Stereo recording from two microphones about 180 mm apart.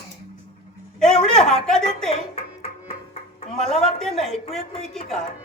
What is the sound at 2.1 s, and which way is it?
Music, 35° left (ahead or behind).